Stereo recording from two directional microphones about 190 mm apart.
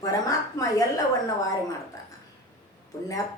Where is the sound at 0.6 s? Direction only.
20° left (ahead or behind).